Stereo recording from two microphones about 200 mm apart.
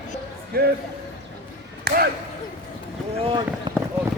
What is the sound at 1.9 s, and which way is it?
Basketball bounce, 50° right (ahead or behind).